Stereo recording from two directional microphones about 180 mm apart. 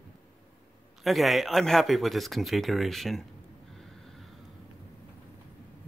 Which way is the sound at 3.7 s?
Centre (ahead or behind).